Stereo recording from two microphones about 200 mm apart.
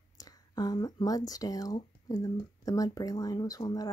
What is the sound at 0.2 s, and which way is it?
Speech, 20° left (ahead or behind).